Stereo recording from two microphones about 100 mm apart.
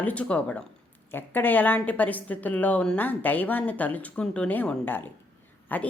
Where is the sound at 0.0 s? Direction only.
15° left (ahead or behind).